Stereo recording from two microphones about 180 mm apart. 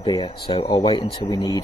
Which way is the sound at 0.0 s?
25° left (ahead or behind).